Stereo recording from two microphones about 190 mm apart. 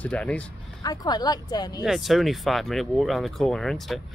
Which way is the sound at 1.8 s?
Centre (ahead or behind).